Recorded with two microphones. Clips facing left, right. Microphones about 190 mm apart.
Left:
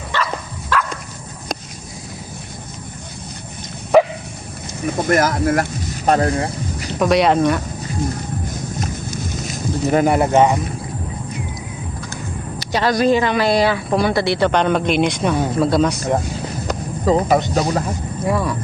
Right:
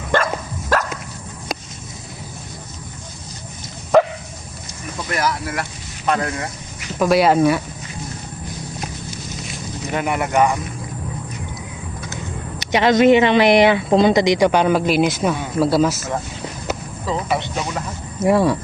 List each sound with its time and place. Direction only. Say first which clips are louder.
0.1 s dog: right 4 dB; 50° right (ahead or behind)
4.9 s speech: left 6 dB; 50° left (ahead or behind)
6.1 s speech: left 5 dB; 35° left (ahead or behind)
7.0 s speech: even; 5° right (ahead or behind)
8.4 s a sound: left 4 dB; 45° left (ahead or behind); by 10.6 s 20° left (ahead or behind)
12.1 s speech: left 1 dB; 20° right (ahead or behind); by 16.0 s 5° right (ahead or behind)
17.1 s speech: left 7 dB; 40° left (ahead or behind)
18.2 s speech: right 5 dB; 25° right (ahead or behind)